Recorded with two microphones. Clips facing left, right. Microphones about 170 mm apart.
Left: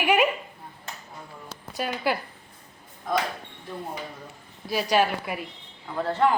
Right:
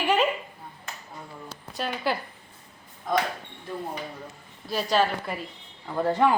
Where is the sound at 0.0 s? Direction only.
10° left (ahead or behind).